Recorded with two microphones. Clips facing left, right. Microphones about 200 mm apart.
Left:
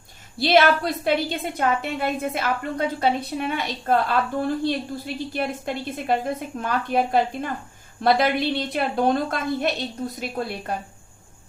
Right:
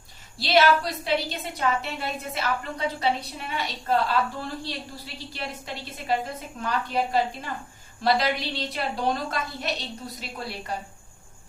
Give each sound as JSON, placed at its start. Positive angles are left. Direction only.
{"t": 0.3, "sound": "a woman's voice", "side_deg": 55}